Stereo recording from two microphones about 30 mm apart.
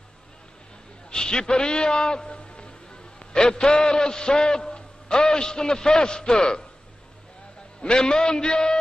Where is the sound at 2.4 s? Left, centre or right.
Left.